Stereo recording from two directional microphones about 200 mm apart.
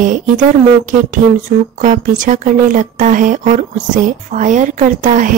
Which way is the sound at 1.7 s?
40° right (ahead or behind).